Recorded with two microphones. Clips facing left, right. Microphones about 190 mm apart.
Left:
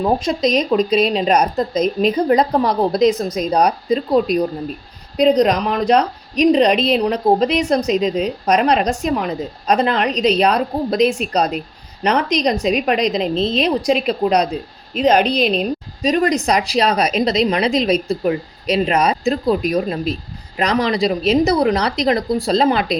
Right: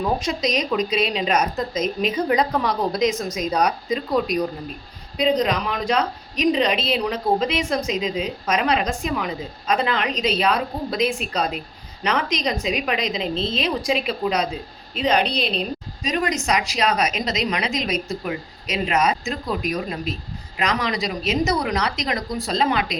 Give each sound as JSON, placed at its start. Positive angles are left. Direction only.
{"t": 0.0, "sound": "a woman's voice", "side_deg": 35}
{"t": 16.0, "sound": "a woman's voice", "side_deg": 35}